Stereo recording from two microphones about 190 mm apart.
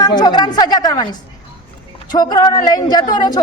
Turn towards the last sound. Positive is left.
turn(degrees=20)  # may be behind; listen again after turning